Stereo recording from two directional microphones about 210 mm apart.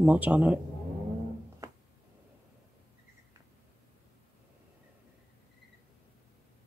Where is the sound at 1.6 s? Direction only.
15° right (ahead or behind).